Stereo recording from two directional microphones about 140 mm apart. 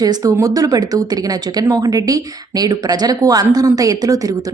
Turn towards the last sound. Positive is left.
turn(degrees=-25)  # may be behind; listen again after turning